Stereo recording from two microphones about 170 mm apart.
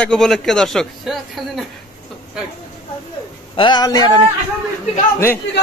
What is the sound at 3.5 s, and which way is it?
Speech, 25° left (ahead or behind).